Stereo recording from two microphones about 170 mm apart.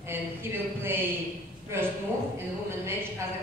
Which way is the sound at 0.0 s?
15° right (ahead or behind).